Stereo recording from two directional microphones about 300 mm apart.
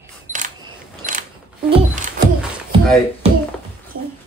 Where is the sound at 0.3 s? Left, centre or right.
Right.